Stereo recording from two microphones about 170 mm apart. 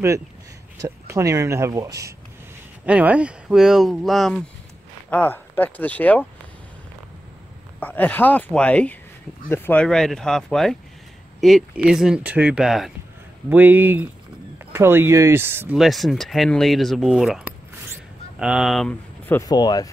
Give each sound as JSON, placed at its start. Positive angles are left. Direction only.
{"t": 0.7, "sound": "speech", "side_deg": -15}
{"t": 2.8, "sound": "speech", "side_deg": -10}
{"t": 7.8, "sound": "speech", "side_deg": 10}
{"t": 15.7, "sound": "speech", "side_deg": 0}
{"t": 19.4, "sound": "speech", "side_deg": 25}